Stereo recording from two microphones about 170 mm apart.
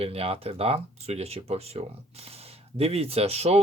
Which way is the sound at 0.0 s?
35° right (ahead or behind).